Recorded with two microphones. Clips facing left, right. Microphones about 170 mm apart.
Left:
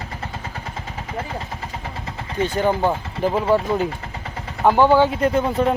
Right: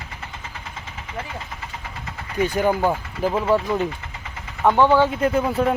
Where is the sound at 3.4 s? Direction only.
30° left (ahead or behind).